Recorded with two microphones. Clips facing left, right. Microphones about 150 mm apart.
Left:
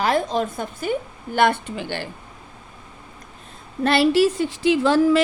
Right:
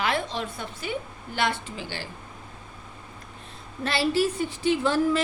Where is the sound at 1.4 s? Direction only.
60° left (ahead or behind).